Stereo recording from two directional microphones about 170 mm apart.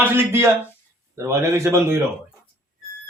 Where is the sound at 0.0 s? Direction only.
15° right (ahead or behind).